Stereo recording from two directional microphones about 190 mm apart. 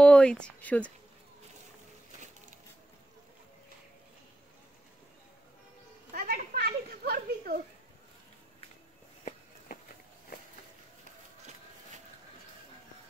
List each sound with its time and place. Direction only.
0.0 s speech: 5° left (ahead or behind)
6.1 s children playing: 50° right (ahead or behind)